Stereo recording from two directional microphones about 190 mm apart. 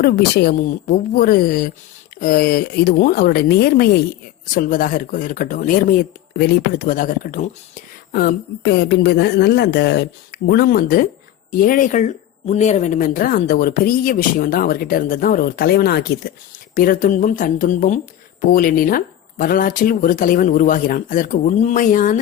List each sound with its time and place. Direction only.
0.0 s a woman's voice: 55° left (ahead or behind)
16.7 s speech: 45° left (ahead or behind)